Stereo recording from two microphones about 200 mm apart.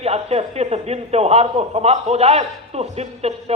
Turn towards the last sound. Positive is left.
turn(degrees=-30)  # may be behind; listen again after turning